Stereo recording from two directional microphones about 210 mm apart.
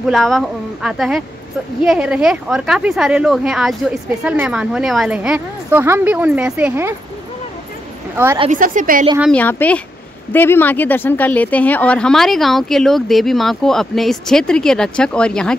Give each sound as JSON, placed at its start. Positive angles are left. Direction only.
{"t": 0.0, "sound": "speech", "side_deg": 0}
{"t": 8.4, "sound": "a woman's voice", "side_deg": -40}
{"t": 9.3, "sound": "speech", "side_deg": 10}